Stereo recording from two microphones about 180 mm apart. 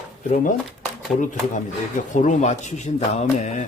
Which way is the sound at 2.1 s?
45° left (ahead or behind).